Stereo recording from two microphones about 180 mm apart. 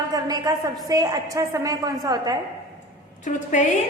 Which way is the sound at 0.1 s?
20° right (ahead or behind).